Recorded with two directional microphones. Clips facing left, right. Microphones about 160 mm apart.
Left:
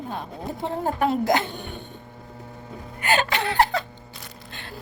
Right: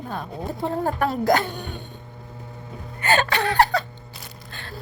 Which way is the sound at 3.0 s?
15° left (ahead or behind).